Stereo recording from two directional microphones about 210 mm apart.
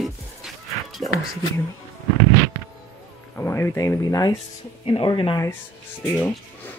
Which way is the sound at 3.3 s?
10° left (ahead or behind).